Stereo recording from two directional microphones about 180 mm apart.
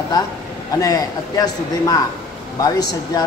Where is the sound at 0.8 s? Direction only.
20° left (ahead or behind).